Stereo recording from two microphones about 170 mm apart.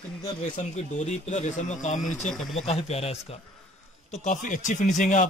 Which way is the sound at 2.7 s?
35° left (ahead or behind).